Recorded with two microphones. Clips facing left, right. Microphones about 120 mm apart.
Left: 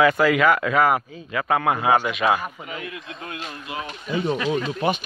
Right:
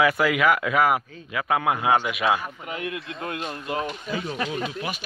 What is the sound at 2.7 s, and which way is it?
Speech, 60° right (ahead or behind).